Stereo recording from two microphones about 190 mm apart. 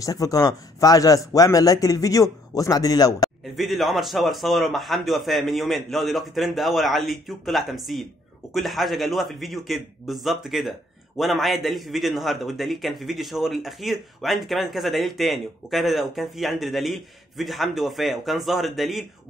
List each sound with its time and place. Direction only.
0.0 s speech: 20° left (ahead or behind)
3.5 s a man's voice: centre (ahead or behind)